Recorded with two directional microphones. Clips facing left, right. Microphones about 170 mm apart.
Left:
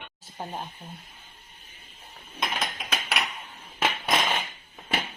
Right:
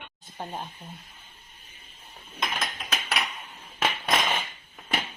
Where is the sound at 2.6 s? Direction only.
10° left (ahead or behind).